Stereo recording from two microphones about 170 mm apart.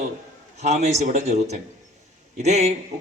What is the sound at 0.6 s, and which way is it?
Speech, 40° right (ahead or behind).